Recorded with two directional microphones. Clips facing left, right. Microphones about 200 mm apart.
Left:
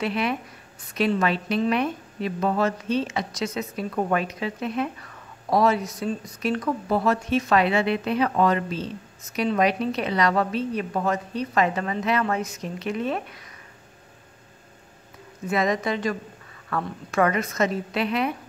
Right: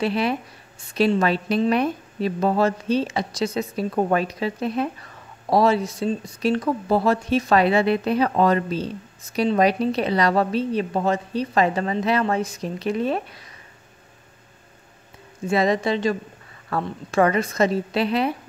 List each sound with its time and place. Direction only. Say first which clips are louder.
0.0 s speech: right 3 dB; 35° right (ahead or behind)
15.4 s speech: right 3 dB; 30° right (ahead or behind)